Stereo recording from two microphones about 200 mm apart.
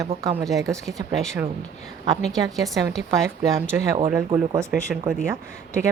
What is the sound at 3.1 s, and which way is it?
Speech, 15° right (ahead or behind).